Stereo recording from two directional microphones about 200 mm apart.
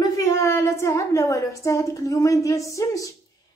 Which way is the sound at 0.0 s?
15° left (ahead or behind).